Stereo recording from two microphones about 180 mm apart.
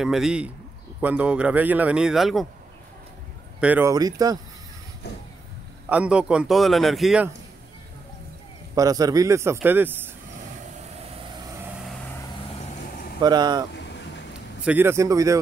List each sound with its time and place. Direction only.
0.0 s a man's voice: centre (ahead or behind)
3.6 s a man's voice: 10° right (ahead or behind)
3.9 s speech: 20° right (ahead or behind)
5.9 s a man's voice: 5° right (ahead or behind)
8.7 s a man's voice: 20° right (ahead or behind)
11.3 s vehicle: 20° right (ahead or behind)
13.2 s speech: 25° right (ahead or behind)
13.7 s a sound: 70° left (ahead or behind)
14.6 s a man's voice: 10° right (ahead or behind)